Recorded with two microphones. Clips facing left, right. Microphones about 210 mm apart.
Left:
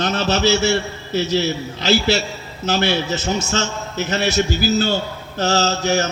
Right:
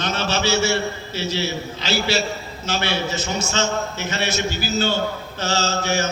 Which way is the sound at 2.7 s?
45° left (ahead or behind).